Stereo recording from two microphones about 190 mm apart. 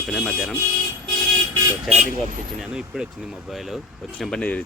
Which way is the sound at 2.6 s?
5° right (ahead or behind).